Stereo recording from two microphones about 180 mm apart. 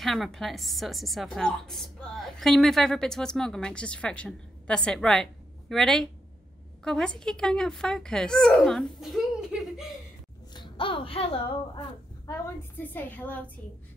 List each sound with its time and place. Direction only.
0.0 s a woman's voice: centre (ahead or behind)
10.5 s speech: 25° left (ahead or behind)
12.7 s a woman's voice: 10° left (ahead or behind)